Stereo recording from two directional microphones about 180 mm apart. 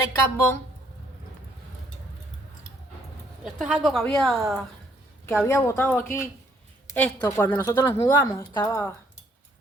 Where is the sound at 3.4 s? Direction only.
5° right (ahead or behind).